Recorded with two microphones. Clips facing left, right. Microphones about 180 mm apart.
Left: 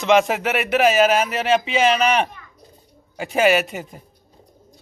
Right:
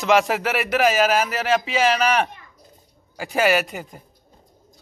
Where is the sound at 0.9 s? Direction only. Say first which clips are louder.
Left 2 dB; 25° left (ahead or behind).